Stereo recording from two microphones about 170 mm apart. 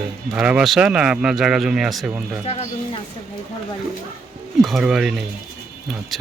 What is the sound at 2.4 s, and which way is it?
Speech, 40° left (ahead or behind).